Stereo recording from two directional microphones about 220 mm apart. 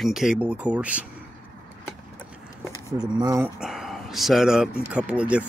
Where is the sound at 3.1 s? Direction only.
15° right (ahead or behind).